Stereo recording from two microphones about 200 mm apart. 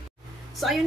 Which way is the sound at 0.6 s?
Centre (ahead or behind).